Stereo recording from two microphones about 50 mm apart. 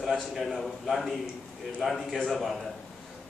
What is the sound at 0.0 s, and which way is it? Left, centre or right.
A man's voice, centre.